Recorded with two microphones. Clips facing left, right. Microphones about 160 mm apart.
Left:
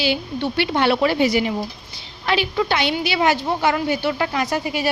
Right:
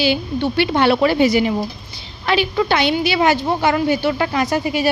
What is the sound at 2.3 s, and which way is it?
Speech, 65° right (ahead or behind).